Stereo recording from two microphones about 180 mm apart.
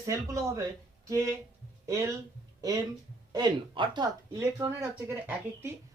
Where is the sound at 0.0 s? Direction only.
20° right (ahead or behind).